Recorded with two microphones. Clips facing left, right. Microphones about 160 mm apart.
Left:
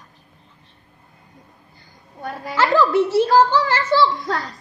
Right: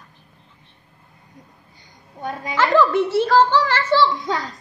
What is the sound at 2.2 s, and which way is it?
Child singing, 5° left (ahead or behind).